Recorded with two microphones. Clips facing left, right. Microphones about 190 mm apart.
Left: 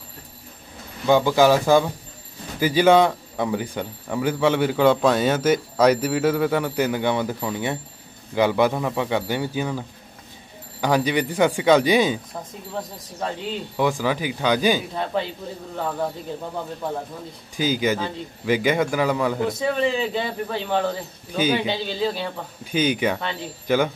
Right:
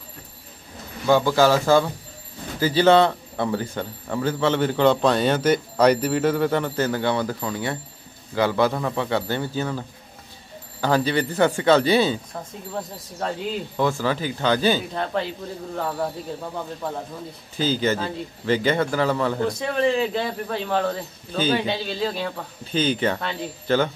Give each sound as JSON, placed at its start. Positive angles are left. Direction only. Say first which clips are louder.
{"t": 1.0, "sound": "a man's voice", "louder": "left 1 dB", "side_deg": 15}
{"t": 12.7, "sound": "speech", "louder": "even", "side_deg": 0}
{"t": 13.7, "sound": "a man's voice", "louder": "left 1 dB", "side_deg": 15}
{"t": 17.6, "sound": "a man's voice", "louder": "even", "side_deg": 10}
{"t": 21.3, "sound": "a man's voice", "louder": "left 1 dB", "side_deg": 10}
{"t": 21.6, "sound": "speech", "louder": "left 1 dB", "side_deg": 0}
{"t": 22.7, "sound": "a man's voice", "louder": "left 1 dB", "side_deg": 10}